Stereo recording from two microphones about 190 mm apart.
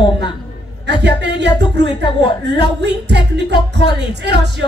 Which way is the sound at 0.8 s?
65° right (ahead or behind).